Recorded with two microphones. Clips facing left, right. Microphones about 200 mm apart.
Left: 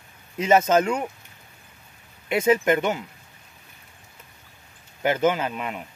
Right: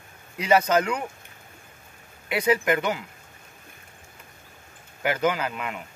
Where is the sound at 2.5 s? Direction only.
25° left (ahead or behind).